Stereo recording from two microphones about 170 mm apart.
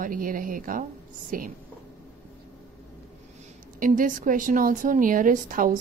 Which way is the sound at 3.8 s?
50° right (ahead or behind).